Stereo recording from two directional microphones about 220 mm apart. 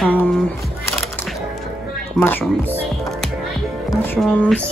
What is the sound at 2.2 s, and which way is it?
Speech, 10° left (ahead or behind).